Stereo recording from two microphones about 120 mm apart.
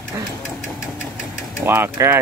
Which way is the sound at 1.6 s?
20° right (ahead or behind).